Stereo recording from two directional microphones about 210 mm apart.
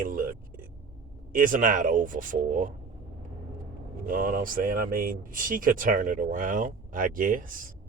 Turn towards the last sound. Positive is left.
turn(degrees=-40)  # may be behind; listen again after turning